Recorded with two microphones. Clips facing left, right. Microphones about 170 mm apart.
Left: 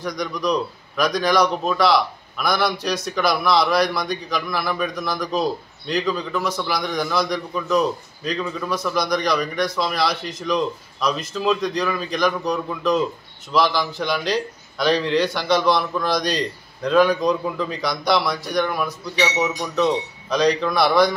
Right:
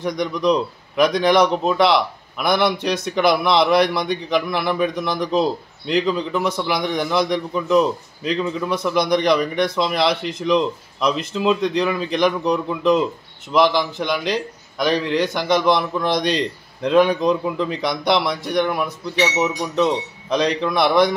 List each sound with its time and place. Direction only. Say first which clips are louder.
0.1 s a man's voice: right 4 dB; 25° right (ahead or behind)